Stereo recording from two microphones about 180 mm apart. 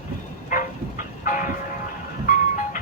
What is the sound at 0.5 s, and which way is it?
Train, 50° left (ahead or behind).